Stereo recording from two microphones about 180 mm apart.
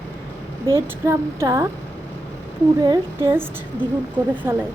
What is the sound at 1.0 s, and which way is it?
Speech, 15° right (ahead or behind).